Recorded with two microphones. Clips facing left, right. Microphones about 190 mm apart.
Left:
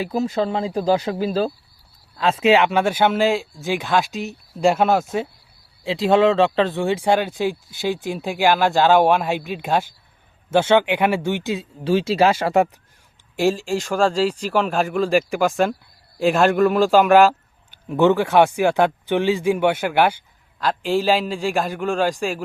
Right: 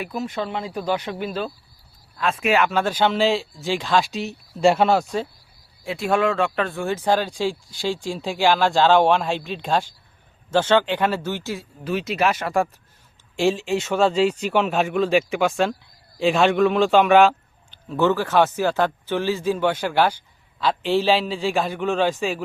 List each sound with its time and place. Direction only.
0.0 s speech: 30° left (ahead or behind); by 5.0 s centre (ahead or behind)
5.8 s speech: 20° left (ahead or behind)
13.7 s speech: 5° right (ahead or behind)
17.8 s speech: 15° left (ahead or behind); by 22.4 s centre (ahead or behind)